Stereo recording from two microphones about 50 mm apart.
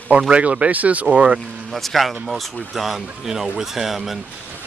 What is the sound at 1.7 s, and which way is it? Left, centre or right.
Speech, centre.